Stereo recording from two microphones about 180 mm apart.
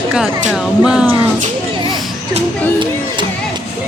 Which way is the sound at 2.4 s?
25° right (ahead or behind).